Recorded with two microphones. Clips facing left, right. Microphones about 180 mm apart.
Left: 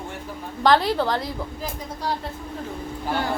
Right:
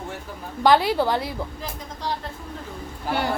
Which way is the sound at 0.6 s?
5° right (ahead or behind).